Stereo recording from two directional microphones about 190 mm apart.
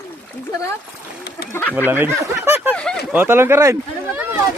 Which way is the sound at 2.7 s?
5° left (ahead or behind).